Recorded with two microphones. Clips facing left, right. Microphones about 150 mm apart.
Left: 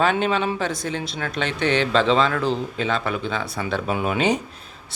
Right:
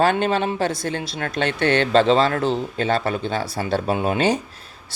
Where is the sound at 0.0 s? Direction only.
40° right (ahead or behind).